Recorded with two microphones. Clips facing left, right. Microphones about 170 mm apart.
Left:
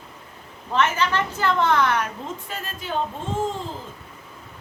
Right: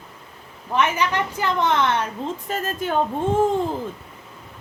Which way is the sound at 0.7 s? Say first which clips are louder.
Right 1 dB; 15° right (ahead or behind).